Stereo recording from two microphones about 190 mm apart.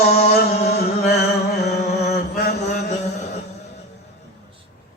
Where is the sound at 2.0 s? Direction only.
40° left (ahead or behind).